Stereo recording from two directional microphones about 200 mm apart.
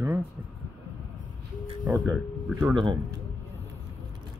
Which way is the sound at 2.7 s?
25° right (ahead or behind).